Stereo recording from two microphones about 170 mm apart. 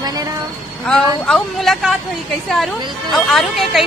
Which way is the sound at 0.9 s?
5° left (ahead or behind).